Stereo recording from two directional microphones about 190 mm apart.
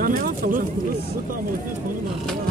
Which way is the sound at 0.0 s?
45° right (ahead or behind).